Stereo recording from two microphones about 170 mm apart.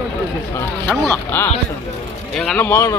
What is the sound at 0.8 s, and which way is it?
Speech, 5° left (ahead or behind).